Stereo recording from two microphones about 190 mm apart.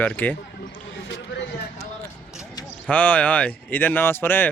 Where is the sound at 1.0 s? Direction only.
75° left (ahead or behind).